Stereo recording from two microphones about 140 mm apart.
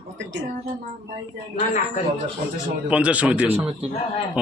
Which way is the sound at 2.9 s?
10° right (ahead or behind).